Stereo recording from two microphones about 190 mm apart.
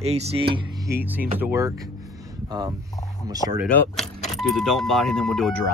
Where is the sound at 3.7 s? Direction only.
10° left (ahead or behind).